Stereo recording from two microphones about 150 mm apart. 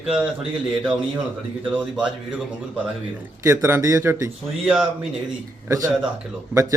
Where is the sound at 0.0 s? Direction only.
5° right (ahead or behind).